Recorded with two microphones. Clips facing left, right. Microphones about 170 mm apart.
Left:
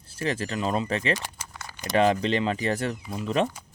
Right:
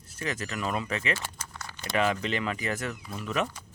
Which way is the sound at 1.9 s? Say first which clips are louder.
Left 6 dB; 35° left (ahead or behind).